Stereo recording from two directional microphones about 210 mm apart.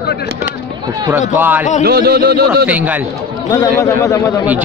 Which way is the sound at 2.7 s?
5° right (ahead or behind).